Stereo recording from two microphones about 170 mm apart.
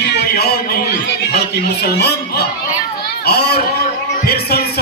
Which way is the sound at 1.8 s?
70° left (ahead or behind).